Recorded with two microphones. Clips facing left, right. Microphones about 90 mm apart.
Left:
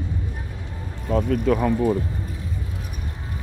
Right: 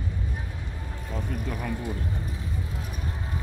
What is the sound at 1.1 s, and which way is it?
Speech, 90° left.